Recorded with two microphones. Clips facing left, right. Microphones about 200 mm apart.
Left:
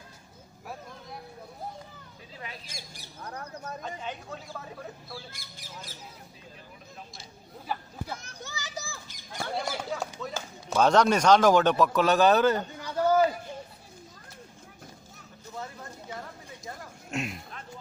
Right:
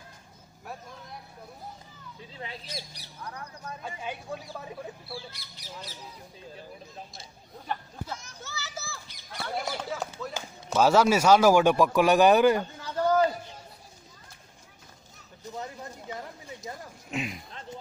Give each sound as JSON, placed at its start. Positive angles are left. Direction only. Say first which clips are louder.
{"t": 2.3, "sound": "speech", "louder": "right 2 dB", "side_deg": -30}
{"t": 2.6, "sound": "speech", "louder": "right 5 dB", "side_deg": 50}
{"t": 3.8, "sound": "a man's voice", "louder": "even", "side_deg": -10}
{"t": 5.3, "sound": "speech", "louder": "right 1 dB", "side_deg": 50}
{"t": 7.2, "sound": "speech", "louder": "even", "side_deg": 5}
{"t": 8.4, "sound": "a sound", "louder": "left 1 dB", "side_deg": 15}
{"t": 9.0, "sound": "bird", "louder": "left 2 dB", "side_deg": 45}
{"t": 9.6, "sound": "a sound", "louder": "even", "side_deg": 0}
{"t": 10.7, "sound": "a man's voice", "louder": "right 1 dB", "side_deg": -5}
{"t": 12.8, "sound": "a sound", "louder": "left 1 dB", "side_deg": 10}
{"t": 15.5, "sound": "a sound", "louder": "right 1 dB", "side_deg": -15}
{"t": 17.1, "sound": "speech", "louder": "even", "side_deg": 0}